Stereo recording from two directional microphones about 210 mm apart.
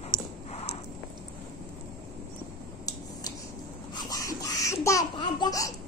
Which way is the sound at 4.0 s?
15° left (ahead or behind).